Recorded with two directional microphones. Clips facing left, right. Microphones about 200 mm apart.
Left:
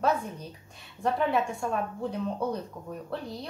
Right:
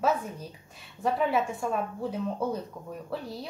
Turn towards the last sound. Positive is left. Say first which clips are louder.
# even
turn(degrees=-5)  # may be behind; listen again after turning